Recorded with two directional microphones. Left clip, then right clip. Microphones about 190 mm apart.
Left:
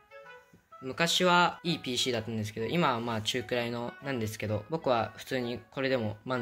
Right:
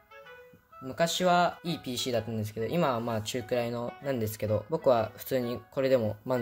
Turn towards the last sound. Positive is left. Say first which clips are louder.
# right 4 dB
turn(degrees=-25)  # may be behind; listen again after turning